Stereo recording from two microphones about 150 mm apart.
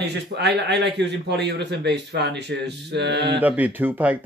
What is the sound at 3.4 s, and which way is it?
Speech, 10° right (ahead or behind).